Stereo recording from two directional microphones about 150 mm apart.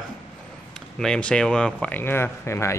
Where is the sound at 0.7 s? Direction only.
5° left (ahead or behind).